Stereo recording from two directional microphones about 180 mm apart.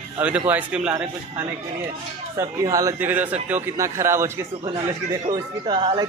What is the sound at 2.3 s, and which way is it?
A man's voice, 20° right (ahead or behind).